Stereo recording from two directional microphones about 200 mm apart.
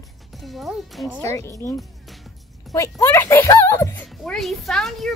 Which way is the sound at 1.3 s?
15° left (ahead or behind).